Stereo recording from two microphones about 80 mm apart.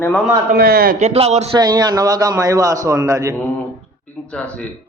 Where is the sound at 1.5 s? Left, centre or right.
Right.